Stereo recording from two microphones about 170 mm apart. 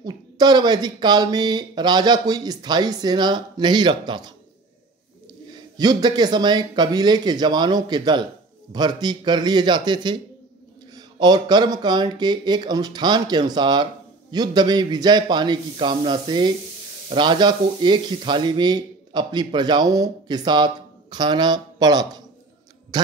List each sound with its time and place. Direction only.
0.0 s speech: 25° right (ahead or behind)
5.8 s speech: 25° right (ahead or behind)